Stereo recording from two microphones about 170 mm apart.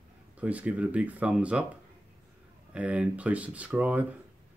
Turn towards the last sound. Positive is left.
turn(degrees=-10)  # may be behind; listen again after turning